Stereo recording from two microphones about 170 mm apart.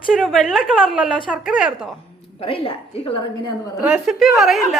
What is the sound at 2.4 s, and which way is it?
A woman's voice, 35° left (ahead or behind).